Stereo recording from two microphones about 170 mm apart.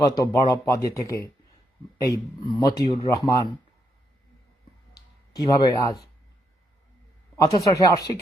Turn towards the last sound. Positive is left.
turn(degrees=20)  # may be behind; listen again after turning